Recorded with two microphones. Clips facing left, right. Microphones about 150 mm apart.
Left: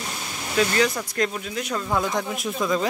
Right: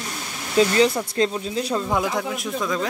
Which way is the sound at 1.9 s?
10° right (ahead or behind).